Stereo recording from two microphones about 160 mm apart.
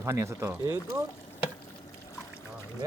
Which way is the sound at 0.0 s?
20° right (ahead or behind).